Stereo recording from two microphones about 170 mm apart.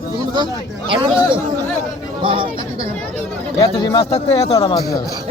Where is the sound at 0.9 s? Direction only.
30° right (ahead or behind).